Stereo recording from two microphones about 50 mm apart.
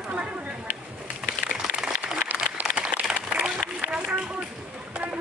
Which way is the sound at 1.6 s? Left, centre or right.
Centre.